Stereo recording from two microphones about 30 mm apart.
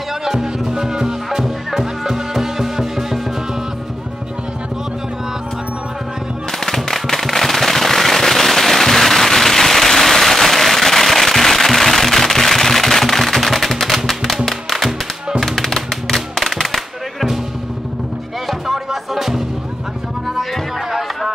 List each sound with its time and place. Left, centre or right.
0.2 s music: centre
1.4 s music: centre
6.6 s firecracker: centre
15.4 s music: centre
18.7 s music: centre